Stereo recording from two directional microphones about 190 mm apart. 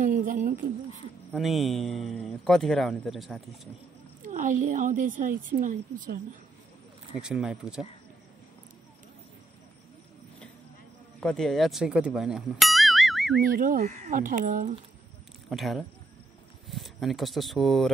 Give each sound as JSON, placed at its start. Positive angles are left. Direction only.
{"t": 0.0, "sound": "a woman's voice", "side_deg": -45}
{"t": 1.3, "sound": "speech", "side_deg": 0}
{"t": 4.2, "sound": "a woman's voice", "side_deg": -40}
{"t": 7.2, "sound": "speech", "side_deg": -5}
{"t": 11.1, "sound": "speech", "side_deg": 5}
{"t": 13.4, "sound": "a woman's voice", "side_deg": -50}
{"t": 15.5, "sound": "speech", "side_deg": 0}